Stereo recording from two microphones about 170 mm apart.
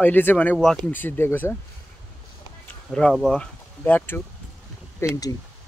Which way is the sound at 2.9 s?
5° left (ahead or behind).